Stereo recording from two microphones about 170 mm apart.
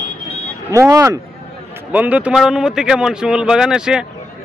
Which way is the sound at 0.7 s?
15° right (ahead or behind).